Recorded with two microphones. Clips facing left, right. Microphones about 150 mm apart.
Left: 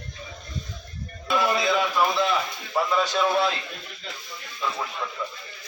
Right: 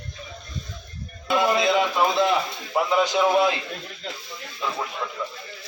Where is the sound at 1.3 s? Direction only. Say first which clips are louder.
Right 3 dB; 20° right (ahead or behind).